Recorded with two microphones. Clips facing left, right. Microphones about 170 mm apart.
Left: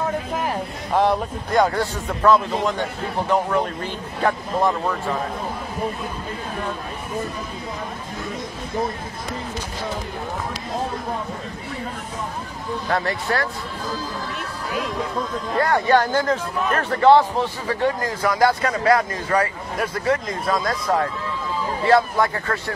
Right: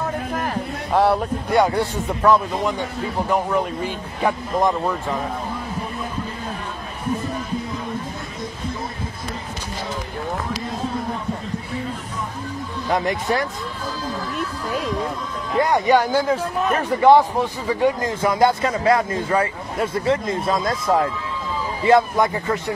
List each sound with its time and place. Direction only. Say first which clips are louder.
0.9 s a man's voice: right 2 dB; 10° right (ahead or behind)
12.9 s speech: right 3 dB; 20° right (ahead or behind)
15.5 s a man's voice: right 1 dB; 20° right (ahead or behind)
18.0 s speech: right 1 dB; 20° right (ahead or behind)